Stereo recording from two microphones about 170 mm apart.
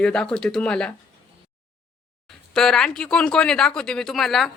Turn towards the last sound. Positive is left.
turn(degrees=0)  # may be behind; listen again after turning